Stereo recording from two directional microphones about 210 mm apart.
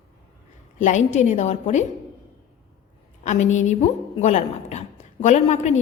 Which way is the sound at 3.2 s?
35° left (ahead or behind).